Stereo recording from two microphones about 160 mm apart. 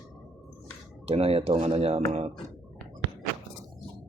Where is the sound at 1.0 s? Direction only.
40° right (ahead or behind).